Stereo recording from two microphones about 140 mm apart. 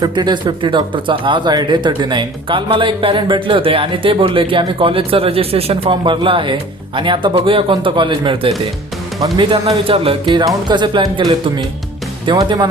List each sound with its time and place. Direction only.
0.0 s speech: 30° right (ahead or behind)